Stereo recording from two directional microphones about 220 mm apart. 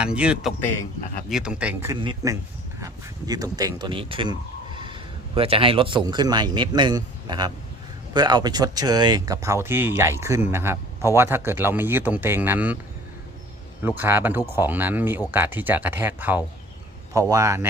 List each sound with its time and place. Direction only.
0.0 s speech: 5° right (ahead or behind)
13.8 s speech: 10° right (ahead or behind)